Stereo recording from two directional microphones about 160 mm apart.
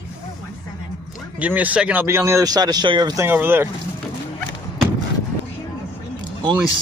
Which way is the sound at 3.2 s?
15° right (ahead or behind).